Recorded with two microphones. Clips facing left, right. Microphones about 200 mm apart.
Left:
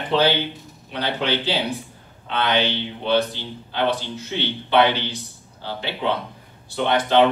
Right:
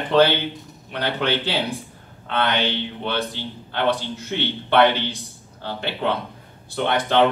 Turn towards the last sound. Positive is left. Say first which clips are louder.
# left 2 dB
turn(degrees=-55)  # may be behind; listen again after turning